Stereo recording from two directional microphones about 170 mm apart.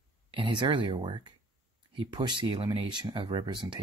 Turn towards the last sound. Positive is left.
turn(degrees=-25)  # may be behind; listen again after turning